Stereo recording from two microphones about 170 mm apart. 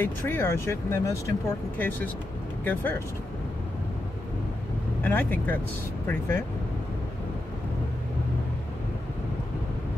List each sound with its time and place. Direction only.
0.0 s speech: 10° left (ahead or behind)
5.0 s speech: 10° left (ahead or behind)